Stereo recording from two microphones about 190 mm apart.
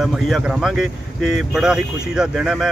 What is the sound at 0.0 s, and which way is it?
Speech, centre (ahead or behind).